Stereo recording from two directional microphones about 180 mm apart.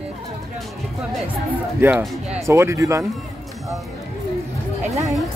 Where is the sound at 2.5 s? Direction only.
15° right (ahead or behind).